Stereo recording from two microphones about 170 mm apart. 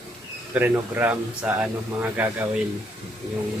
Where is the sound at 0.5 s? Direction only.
10° right (ahead or behind).